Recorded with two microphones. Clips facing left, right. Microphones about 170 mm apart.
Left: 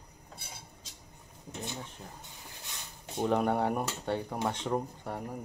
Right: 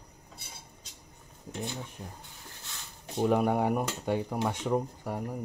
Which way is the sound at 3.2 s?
10° right (ahead or behind).